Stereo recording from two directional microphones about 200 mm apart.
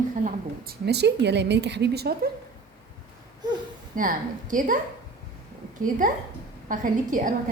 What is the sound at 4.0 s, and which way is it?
Speech, 40° right (ahead or behind).